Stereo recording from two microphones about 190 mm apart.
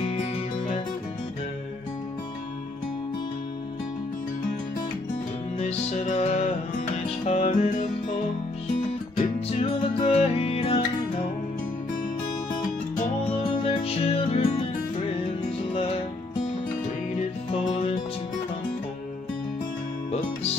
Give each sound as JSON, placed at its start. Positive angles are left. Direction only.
{"t": 0.0, "sound": "music", "side_deg": 30}
{"t": 5.6, "sound": "music", "side_deg": 35}
{"t": 9.2, "sound": "music", "side_deg": 30}
{"t": 13.3, "sound": "music", "side_deg": 30}
{"t": 17.2, "sound": "music", "side_deg": 30}